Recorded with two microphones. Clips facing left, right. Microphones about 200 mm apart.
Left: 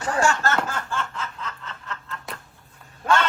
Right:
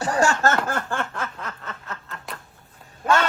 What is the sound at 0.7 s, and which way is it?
Snicker, 55° right (ahead or behind).